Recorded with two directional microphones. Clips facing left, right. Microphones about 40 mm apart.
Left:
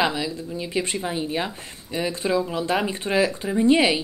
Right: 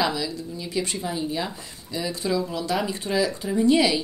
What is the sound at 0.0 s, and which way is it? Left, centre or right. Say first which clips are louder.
Speech: left 2 dB; left.